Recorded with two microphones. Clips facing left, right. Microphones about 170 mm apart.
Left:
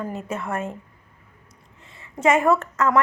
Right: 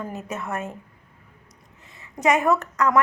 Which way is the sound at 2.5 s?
25° left (ahead or behind).